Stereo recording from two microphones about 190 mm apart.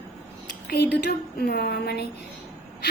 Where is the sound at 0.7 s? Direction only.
60° left (ahead or behind).